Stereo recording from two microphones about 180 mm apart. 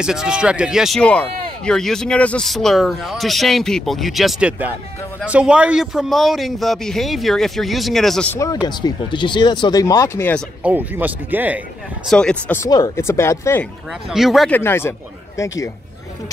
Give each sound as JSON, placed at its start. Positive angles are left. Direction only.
{"t": 0.0, "sound": "a man's voice", "side_deg": -5}
{"t": 8.6, "sound": "speech", "side_deg": 25}
{"t": 10.6, "sound": "speech", "side_deg": -10}
{"t": 12.1, "sound": "a man's voice", "side_deg": 5}
{"t": 12.6, "sound": "speech", "side_deg": 20}
{"t": 14.1, "sound": "a man's voice", "side_deg": 0}
{"t": 14.5, "sound": "speech", "side_deg": 15}